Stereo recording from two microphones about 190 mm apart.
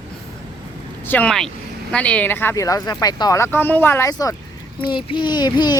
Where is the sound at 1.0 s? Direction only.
10° left (ahead or behind).